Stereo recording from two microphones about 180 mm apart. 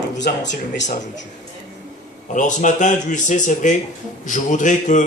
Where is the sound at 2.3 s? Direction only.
45° left (ahead or behind).